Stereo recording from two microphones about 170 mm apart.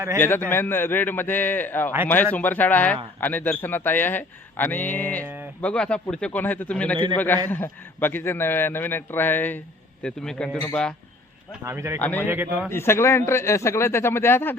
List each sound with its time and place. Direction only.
0.2 s a man's voice: 15° left (ahead or behind)
11.6 s speech: 15° right (ahead or behind)
11.9 s speech: 10° left (ahead or behind)
12.2 s speech: 10° right (ahead or behind)
12.6 s speech: 15° left (ahead or behind)